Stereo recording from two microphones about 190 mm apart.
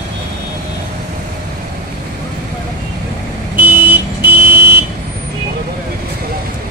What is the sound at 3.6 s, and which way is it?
Vehicle, 10° right (ahead or behind).